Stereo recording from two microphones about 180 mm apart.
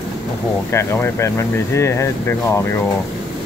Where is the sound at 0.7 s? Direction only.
15° left (ahead or behind).